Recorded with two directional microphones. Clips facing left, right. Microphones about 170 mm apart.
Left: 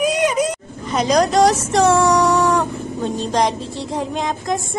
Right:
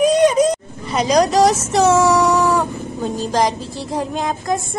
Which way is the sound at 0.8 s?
5° right (ahead or behind).